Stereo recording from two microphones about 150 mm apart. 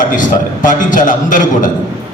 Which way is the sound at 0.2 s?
60° left (ahead or behind).